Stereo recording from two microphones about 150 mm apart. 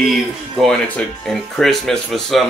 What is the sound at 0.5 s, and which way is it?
Speech, 5° left (ahead or behind).